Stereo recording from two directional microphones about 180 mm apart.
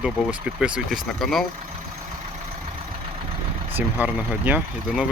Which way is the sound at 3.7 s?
10° right (ahead or behind).